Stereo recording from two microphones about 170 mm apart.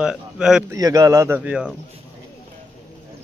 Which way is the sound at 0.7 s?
20° right (ahead or behind).